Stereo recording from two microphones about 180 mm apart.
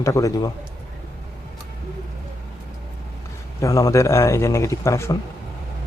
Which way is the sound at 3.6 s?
20° left (ahead or behind).